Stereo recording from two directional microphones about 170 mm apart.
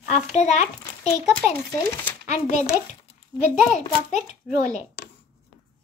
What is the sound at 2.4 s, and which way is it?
A child's voice, 45° left (ahead or behind).